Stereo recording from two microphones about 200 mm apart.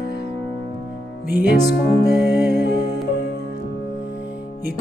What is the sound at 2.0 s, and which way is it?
Music, 55° left (ahead or behind).